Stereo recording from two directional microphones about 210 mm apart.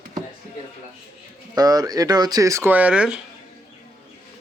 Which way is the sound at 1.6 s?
20° right (ahead or behind).